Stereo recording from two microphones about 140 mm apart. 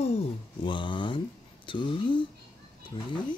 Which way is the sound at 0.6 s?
35° left (ahead or behind).